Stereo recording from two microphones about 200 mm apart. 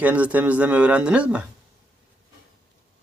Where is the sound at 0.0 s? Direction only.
10° right (ahead or behind).